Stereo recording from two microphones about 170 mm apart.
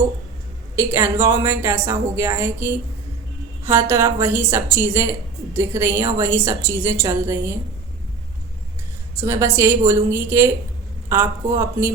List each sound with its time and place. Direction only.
0.8 s a woman's voice: 15° right (ahead or behind)
9.2 s a woman's voice: 15° right (ahead or behind)